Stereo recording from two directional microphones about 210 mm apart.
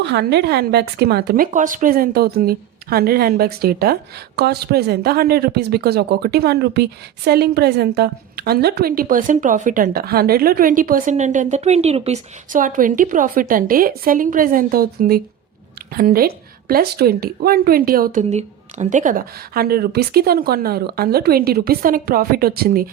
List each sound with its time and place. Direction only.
0.0 s speech: 55° right (ahead or behind)